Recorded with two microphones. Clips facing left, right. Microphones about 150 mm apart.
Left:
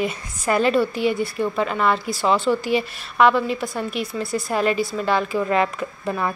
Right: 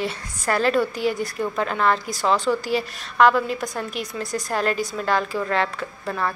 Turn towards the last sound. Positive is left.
turn(degrees=10)  # may be behind; listen again after turning